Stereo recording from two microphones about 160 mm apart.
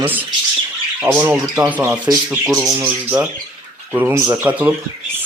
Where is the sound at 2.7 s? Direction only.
15° right (ahead or behind).